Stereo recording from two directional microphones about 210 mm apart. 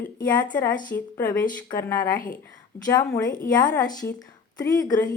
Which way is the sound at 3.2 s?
40° left (ahead or behind).